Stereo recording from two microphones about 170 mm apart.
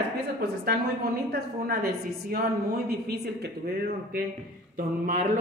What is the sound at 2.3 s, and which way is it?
Speech, 60° right (ahead or behind).